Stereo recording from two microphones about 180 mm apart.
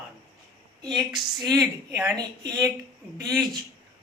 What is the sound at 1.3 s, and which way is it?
Speech, 20° right (ahead or behind).